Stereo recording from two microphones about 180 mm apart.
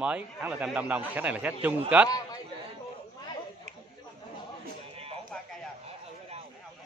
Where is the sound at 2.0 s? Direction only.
20° left (ahead or behind).